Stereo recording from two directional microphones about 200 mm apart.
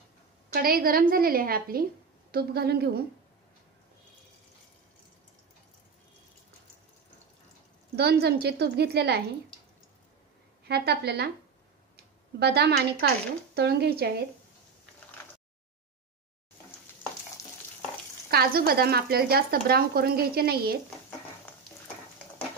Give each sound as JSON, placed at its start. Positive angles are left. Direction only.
{"t": 0.5, "sound": "speech", "side_deg": -50}
{"t": 7.9, "sound": "a woman's voice", "side_deg": -55}
{"t": 10.7, "sound": "speech", "side_deg": -55}
{"t": 12.4, "sound": "a woman's voice", "side_deg": -55}
{"t": 18.3, "sound": "speech", "side_deg": -50}